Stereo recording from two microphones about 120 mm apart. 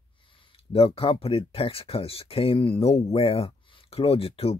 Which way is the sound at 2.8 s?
60° left (ahead or behind).